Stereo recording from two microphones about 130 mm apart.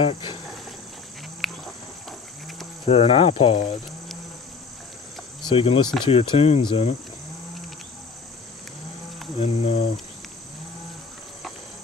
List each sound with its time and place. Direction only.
0.0 s cricket: 45° left (ahead or behind)
1.4 s cricket: centre (ahead or behind)
2.0 s livestock: centre (ahead or behind)
2.9 s cricket: 45° left (ahead or behind)
5.4 s speech: 40° left (ahead or behind)
6.0 s cricket: 45° left (ahead or behind)
9.4 s cricket: 50° left (ahead or behind)